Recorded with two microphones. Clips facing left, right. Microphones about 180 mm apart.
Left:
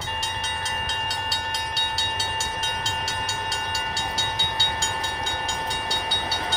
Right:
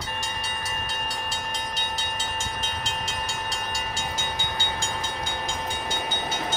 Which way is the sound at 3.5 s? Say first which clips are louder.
Left 1 dB; 15° right (ahead or behind).